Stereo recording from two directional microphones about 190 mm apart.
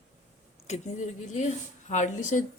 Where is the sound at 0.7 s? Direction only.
35° left (ahead or behind).